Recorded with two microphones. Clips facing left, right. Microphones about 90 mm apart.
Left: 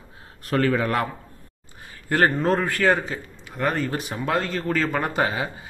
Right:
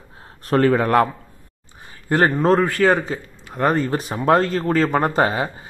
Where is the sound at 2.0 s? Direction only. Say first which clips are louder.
Right 3 dB; 25° right (ahead or behind).